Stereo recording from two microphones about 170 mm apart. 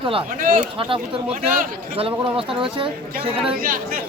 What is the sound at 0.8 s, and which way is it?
Speech, 30° right (ahead or behind).